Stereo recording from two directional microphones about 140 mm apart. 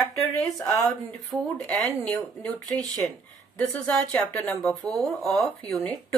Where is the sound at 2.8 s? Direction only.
30° right (ahead or behind).